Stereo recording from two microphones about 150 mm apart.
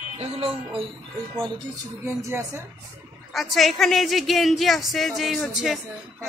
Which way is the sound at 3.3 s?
Centre (ahead or behind).